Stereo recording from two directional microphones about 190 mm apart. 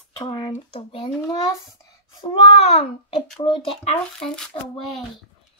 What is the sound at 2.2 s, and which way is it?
A child's voice, 25° left (ahead or behind).